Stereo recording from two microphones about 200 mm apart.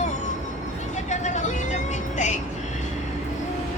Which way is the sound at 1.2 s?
35° left (ahead or behind).